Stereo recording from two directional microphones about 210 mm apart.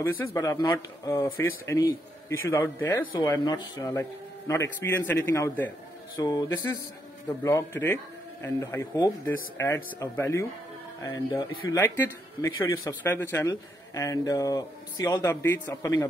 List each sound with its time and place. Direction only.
0.0 s a man's voice: 15° left (ahead or behind)